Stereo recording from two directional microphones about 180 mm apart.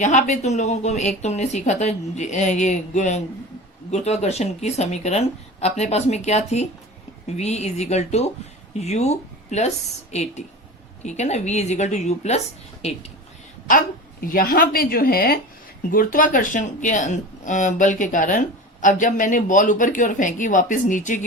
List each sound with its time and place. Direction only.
0.0 s speech: 40° left (ahead or behind)
13.7 s speech: 50° left (ahead or behind)